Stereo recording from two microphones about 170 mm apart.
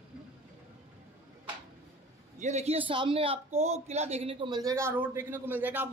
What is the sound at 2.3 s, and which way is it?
Speech, 40° right (ahead or behind).